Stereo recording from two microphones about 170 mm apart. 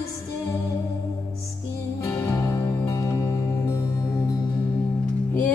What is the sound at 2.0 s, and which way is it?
Music, 15° left (ahead or behind).